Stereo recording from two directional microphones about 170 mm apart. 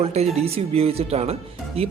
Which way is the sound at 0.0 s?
35° right (ahead or behind).